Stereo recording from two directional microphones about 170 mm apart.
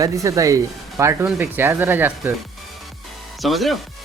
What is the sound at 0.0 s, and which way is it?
Speech, 20° right (ahead or behind).